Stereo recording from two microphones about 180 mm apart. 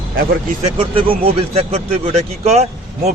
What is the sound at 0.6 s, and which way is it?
Speech, 30° right (ahead or behind).